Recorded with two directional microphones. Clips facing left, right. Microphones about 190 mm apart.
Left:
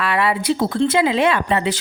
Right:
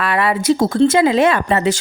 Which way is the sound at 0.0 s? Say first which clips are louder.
Right 2 dB; 50° right (ahead or behind).